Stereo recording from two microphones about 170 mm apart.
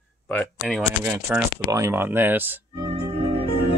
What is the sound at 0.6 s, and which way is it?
Speech, 5° right (ahead or behind).